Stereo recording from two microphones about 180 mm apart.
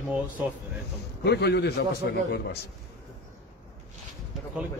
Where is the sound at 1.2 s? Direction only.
65° left (ahead or behind).